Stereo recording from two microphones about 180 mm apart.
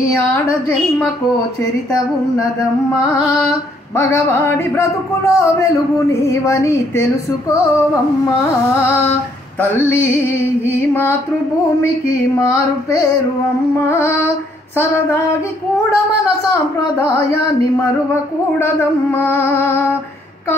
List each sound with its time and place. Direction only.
3.9 s speech: 15° left (ahead or behind)
9.6 s speech: 10° left (ahead or behind)
19.1 s speech: 10° left (ahead or behind)